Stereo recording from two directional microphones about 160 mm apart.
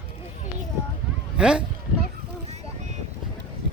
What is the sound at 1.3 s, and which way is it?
Speech, 5° right (ahead or behind).